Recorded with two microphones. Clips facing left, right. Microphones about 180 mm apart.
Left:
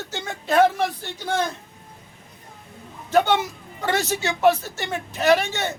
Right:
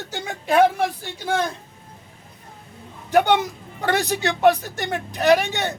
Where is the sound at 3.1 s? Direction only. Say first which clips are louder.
Right 2 dB; 15° right (ahead or behind).